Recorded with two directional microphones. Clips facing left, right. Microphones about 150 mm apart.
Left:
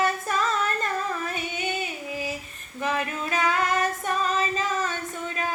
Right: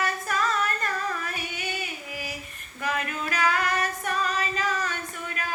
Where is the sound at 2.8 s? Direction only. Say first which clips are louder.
Left 2 dB; 25° left (ahead or behind).